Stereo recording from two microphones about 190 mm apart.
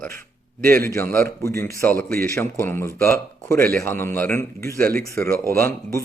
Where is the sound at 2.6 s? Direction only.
15° left (ahead or behind).